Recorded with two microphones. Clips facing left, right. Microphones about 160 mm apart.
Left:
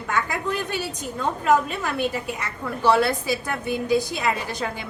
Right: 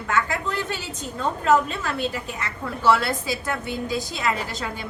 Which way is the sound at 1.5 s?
15° left (ahead or behind).